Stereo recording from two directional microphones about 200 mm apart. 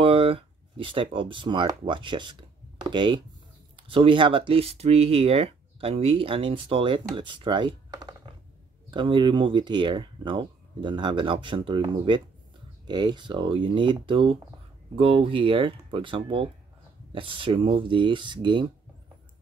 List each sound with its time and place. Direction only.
0.0 s speech: 30° right (ahead or behind)